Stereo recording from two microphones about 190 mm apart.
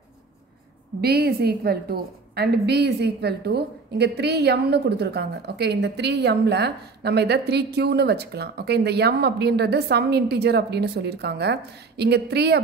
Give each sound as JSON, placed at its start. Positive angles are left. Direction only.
{"t": 1.0, "sound": "a woman's voice", "side_deg": -55}